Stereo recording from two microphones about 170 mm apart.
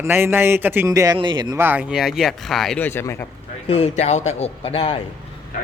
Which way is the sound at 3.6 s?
35° left (ahead or behind).